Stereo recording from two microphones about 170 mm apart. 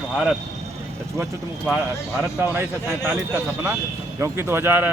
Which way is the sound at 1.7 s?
10° right (ahead or behind).